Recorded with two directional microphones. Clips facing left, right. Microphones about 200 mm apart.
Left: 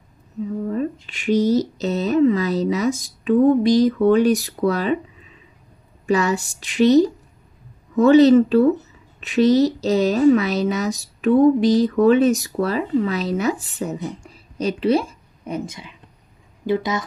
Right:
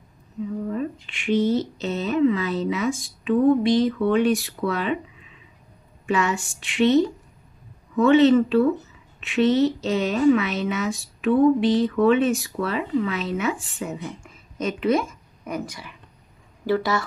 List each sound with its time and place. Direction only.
0.7 s a woman's voice: 40° left (ahead or behind); by 17.0 s 20° left (ahead or behind)